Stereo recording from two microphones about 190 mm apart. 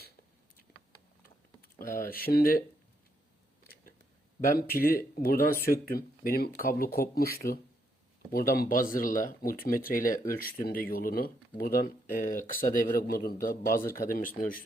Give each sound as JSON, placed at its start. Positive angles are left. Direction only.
{"t": 1.8, "sound": "speech", "side_deg": 45}
{"t": 4.4, "sound": "speech", "side_deg": 50}